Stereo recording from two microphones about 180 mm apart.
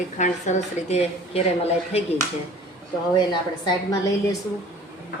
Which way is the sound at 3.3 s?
25° left (ahead or behind).